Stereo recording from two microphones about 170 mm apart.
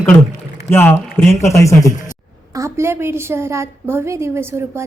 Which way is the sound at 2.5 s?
15° right (ahead or behind).